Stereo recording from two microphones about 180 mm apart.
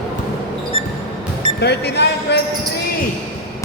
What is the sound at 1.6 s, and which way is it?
Speech, 65° left (ahead or behind).